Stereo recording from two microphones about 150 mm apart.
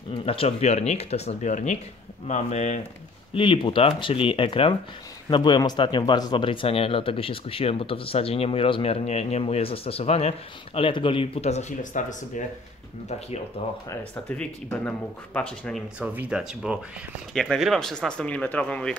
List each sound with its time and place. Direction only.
0.2 s speech: 40° left (ahead or behind)
3.3 s speech: 35° left (ahead or behind); by 12.4 s 55° left (ahead or behind)
13.8 s speech: 10° left (ahead or behind)
16.0 s speech: 10° right (ahead or behind); by 18.9 s 10° left (ahead or behind)